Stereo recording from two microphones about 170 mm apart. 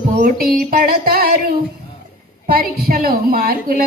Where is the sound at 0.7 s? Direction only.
60° right (ahead or behind).